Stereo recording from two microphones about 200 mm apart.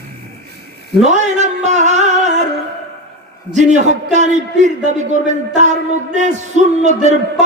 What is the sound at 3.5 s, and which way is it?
Speech, 35° right (ahead or behind).